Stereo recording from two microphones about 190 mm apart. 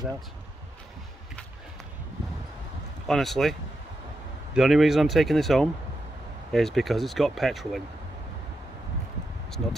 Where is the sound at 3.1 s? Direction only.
Centre (ahead or behind).